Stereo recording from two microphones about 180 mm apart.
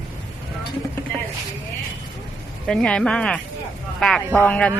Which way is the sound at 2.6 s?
5° left (ahead or behind).